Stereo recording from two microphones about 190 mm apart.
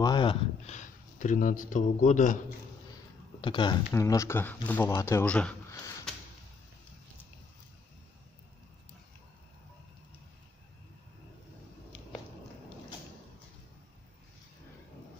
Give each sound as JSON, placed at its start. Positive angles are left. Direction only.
{"t": 0.0, "sound": "a sound", "side_deg": 25}
{"t": 0.7, "sound": "a man's voice", "side_deg": 40}
{"t": 3.3, "sound": "speech", "side_deg": 25}